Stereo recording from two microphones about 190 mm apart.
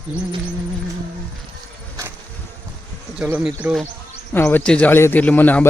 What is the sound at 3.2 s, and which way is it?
A man's voice, 5° right (ahead or behind).